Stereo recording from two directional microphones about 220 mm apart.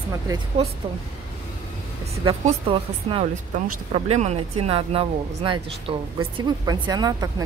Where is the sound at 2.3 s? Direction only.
25° right (ahead or behind).